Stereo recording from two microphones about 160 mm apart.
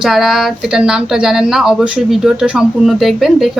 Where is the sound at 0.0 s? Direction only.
Centre (ahead or behind).